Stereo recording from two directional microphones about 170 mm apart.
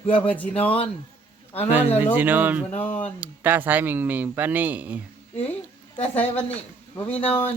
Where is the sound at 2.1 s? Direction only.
10° right (ahead or behind).